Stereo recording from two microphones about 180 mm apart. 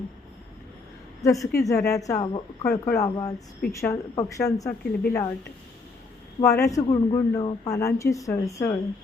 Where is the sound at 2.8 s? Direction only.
15° left (ahead or behind).